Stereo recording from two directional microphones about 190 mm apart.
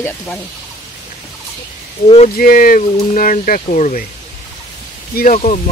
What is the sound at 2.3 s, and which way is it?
Speech, 50° left (ahead or behind).